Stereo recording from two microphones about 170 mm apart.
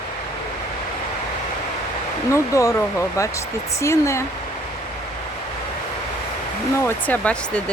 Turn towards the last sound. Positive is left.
turn(degrees=5)  # may be behind; listen again after turning